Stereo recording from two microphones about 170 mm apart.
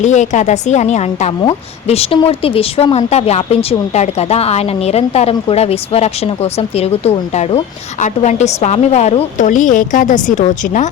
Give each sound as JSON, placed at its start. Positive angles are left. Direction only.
{"t": 0.0, "sound": "a woman's voice", "side_deg": 45}